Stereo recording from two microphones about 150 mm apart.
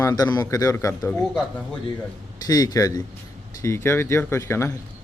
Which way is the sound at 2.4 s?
25° left (ahead or behind).